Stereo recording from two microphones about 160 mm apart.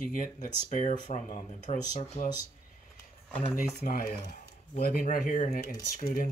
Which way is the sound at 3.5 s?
55° left (ahead or behind).